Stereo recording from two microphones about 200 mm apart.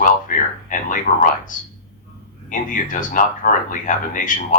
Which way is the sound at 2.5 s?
40° left (ahead or behind).